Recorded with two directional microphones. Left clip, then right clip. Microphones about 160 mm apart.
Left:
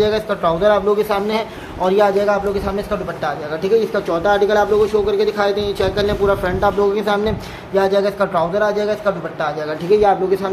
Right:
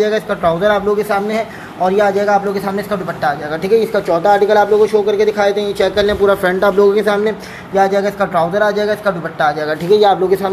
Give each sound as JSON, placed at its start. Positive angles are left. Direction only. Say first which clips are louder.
{"t": 0.0, "sound": "speech", "louder": "right 2 dB", "side_deg": -10}
{"t": 3.6, "sound": "speech", "louder": "right 3 dB", "side_deg": -10}
{"t": 7.2, "sound": "speech", "louder": "right 3 dB", "side_deg": -10}
{"t": 9.8, "sound": "speech", "louder": "right 3 dB", "side_deg": -15}